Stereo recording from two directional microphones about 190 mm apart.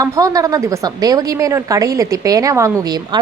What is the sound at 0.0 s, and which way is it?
A woman's voice, 20° right (ahead or behind).